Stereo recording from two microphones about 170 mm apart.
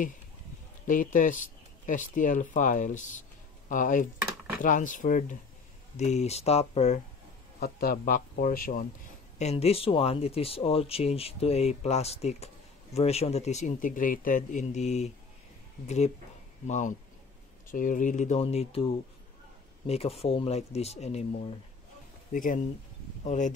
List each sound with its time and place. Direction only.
0.8 s speech: 50° left (ahead or behind)
7.6 s speech: 60° left (ahead or behind)
9.4 s speech: 40° left (ahead or behind)
16.6 s speech: 45° left (ahead or behind)
19.9 s speech: 35° left (ahead or behind)
22.3 s speech: 50° left (ahead or behind)